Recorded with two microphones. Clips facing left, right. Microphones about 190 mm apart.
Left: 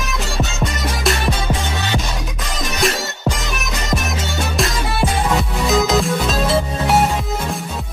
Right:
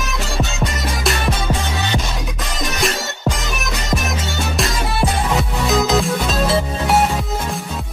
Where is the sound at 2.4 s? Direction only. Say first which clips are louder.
Left 2 dB; centre (ahead or behind).